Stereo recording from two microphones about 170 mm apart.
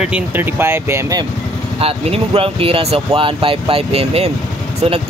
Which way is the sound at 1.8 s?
35° right (ahead or behind).